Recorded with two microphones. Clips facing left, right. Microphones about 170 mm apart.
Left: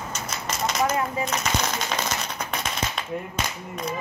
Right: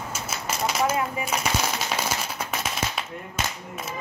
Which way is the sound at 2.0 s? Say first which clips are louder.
Even; 5° right (ahead or behind).